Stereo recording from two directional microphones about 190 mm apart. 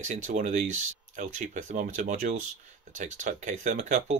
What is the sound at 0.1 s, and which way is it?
Speech, 40° right (ahead or behind).